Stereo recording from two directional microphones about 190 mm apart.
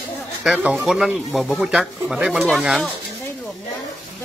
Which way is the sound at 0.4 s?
5° right (ahead or behind).